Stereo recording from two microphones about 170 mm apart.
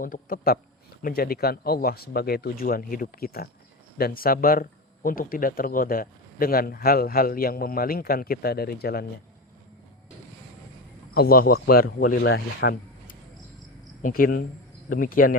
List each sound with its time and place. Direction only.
0.0 s speech: 55° left (ahead or behind)
11.1 s speech: 60° left (ahead or behind); by 12.7 s 85° left
14.0 s speech: 60° left (ahead or behind)